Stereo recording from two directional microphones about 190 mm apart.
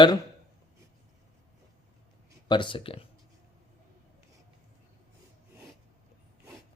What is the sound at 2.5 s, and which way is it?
Speech, 25° left (ahead or behind).